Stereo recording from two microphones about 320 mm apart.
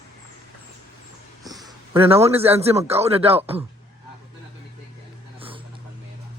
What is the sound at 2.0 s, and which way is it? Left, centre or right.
Speech, centre.